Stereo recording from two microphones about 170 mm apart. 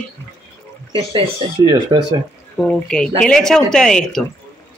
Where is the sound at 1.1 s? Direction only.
30° right (ahead or behind).